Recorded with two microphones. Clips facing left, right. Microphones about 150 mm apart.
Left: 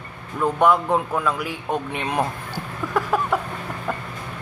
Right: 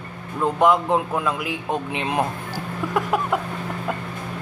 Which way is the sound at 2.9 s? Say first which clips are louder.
Left 1 dB; 15° right (ahead or behind).